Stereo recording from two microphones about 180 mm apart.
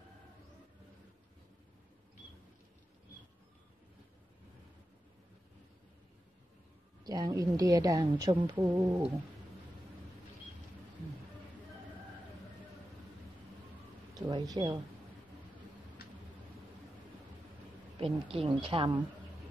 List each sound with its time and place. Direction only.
7.1 s a woman's voice: 20° right (ahead or behind)
14.1 s speech: 20° right (ahead or behind)
17.9 s a woman's voice: 30° right (ahead or behind)